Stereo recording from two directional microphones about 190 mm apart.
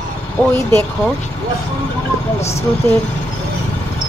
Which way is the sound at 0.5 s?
15° left (ahead or behind).